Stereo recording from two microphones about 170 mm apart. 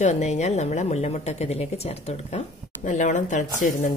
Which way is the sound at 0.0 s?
45° left (ahead or behind).